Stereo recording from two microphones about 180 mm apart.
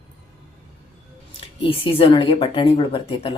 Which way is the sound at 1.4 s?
30° left (ahead or behind).